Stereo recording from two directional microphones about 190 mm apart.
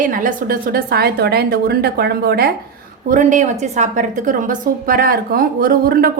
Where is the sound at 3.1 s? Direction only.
40° right (ahead or behind).